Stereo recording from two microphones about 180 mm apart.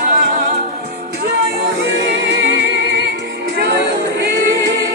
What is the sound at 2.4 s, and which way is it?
Music, 80° right.